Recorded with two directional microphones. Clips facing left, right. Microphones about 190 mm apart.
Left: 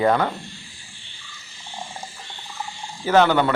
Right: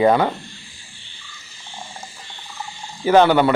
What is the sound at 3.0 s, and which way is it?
Speech, 15° right (ahead or behind).